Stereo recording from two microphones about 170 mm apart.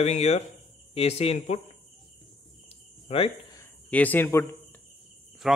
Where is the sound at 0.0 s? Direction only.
40° left (ahead or behind).